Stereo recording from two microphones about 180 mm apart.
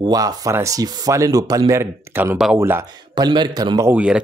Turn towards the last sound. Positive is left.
turn(degrees=-5)  # may be behind; listen again after turning